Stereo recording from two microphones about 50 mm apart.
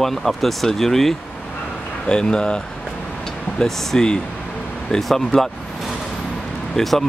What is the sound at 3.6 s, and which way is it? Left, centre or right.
Speech, centre.